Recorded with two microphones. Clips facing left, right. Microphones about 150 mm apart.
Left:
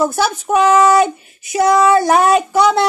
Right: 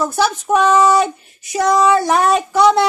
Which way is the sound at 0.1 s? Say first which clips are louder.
Even; centre (ahead or behind).